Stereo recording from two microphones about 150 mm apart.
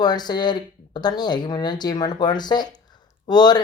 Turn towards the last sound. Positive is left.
turn(degrees=30)  # may be behind; listen again after turning